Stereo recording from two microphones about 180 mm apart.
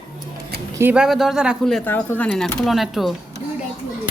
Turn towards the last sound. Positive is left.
turn(degrees=0)  # may be behind; listen again after turning